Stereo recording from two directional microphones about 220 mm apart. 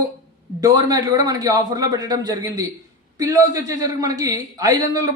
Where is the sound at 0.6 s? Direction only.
15° right (ahead or behind).